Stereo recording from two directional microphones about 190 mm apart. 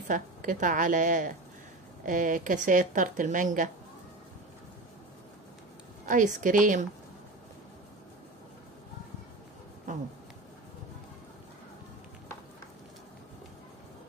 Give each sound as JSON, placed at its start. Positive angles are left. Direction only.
{"t": 0.1, "sound": "speech", "side_deg": -45}
{"t": 6.0, "sound": "speech", "side_deg": -40}